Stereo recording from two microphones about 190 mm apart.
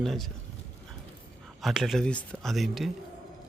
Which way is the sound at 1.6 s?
Centre (ahead or behind).